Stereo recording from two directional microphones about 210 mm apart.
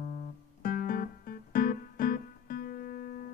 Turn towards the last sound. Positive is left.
turn(degrees=45)  # may be behind; listen again after turning